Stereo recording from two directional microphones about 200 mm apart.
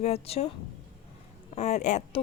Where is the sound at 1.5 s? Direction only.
35° left (ahead or behind).